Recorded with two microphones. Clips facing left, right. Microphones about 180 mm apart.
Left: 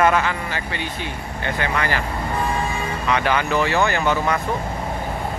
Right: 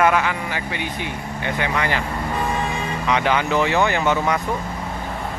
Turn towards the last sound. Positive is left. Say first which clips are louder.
# right 1 dB
turn(degrees=-15)  # may be behind; listen again after turning